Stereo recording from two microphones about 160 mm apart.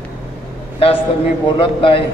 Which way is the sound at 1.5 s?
30° left (ahead or behind).